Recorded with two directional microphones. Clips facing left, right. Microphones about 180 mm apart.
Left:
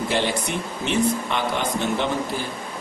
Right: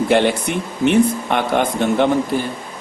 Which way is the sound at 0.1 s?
60° right (ahead or behind).